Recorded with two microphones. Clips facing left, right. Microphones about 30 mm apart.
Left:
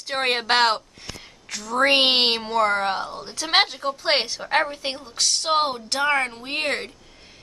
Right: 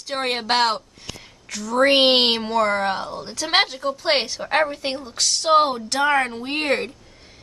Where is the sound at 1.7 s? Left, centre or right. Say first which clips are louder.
Right 2 dB; centre.